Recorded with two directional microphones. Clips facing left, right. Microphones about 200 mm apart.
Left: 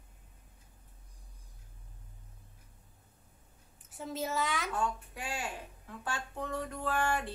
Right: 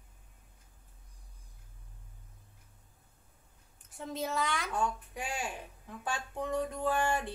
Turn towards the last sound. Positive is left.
turn(degrees=-15)  # may be behind; listen again after turning